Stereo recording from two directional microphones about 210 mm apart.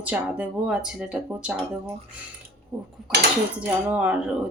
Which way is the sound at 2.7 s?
10° right (ahead or behind).